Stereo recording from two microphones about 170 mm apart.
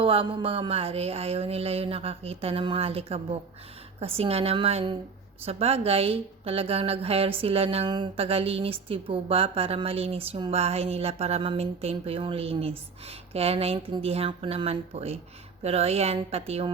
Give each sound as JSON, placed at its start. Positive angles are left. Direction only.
{"t": 0.0, "sound": "a woman's voice", "side_deg": -30}